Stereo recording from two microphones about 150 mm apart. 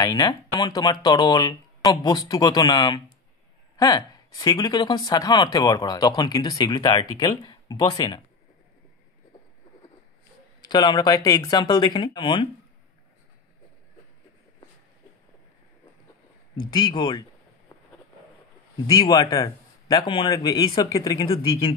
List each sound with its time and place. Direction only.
0.0 s speech: 25° left (ahead or behind)
10.7 s speech: 30° left (ahead or behind)
16.7 s a sound: 30° left (ahead or behind)
18.9 s a man's voice: 30° left (ahead or behind)